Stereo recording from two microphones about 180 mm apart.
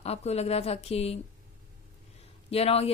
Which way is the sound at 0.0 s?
35° left (ahead or behind).